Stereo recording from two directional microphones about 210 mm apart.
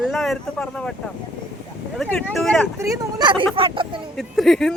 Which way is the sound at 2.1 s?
5° left (ahead or behind).